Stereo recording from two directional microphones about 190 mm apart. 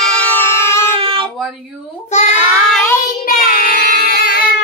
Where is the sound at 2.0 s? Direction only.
35° left (ahead or behind).